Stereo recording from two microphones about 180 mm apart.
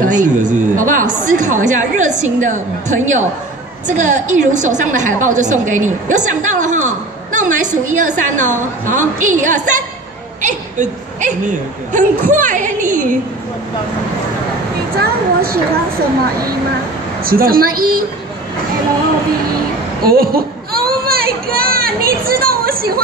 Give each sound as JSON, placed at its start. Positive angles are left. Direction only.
{"t": 0.1, "sound": "a sound", "side_deg": -45}
{"t": 1.2, "sound": "a woman's voice", "side_deg": -45}
{"t": 10.4, "sound": "a sound", "side_deg": -45}
{"t": 11.9, "sound": "a woman's voice", "side_deg": -45}
{"t": 15.0, "sound": "a woman's voice", "side_deg": -55}
{"t": 17.2, "sound": "a woman's voice", "side_deg": -55}
{"t": 20.0, "sound": "children playing", "side_deg": -55}